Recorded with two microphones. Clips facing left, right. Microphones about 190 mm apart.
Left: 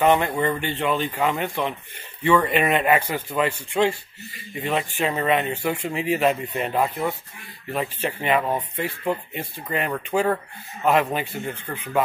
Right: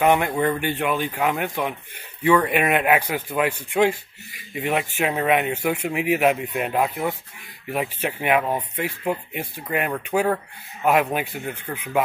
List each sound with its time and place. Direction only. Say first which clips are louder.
0.0 s speech: even; 10° right (ahead or behind)